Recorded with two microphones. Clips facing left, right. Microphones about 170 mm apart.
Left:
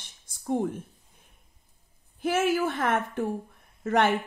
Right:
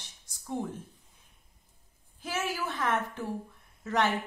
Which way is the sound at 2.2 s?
55° left (ahead or behind).